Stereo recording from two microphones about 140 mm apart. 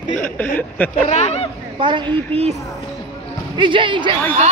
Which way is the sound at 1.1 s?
50° left (ahead or behind).